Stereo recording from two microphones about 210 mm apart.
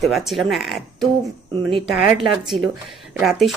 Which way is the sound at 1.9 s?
5° right (ahead or behind).